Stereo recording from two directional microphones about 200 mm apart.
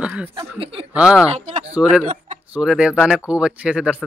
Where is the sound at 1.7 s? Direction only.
5° right (ahead or behind).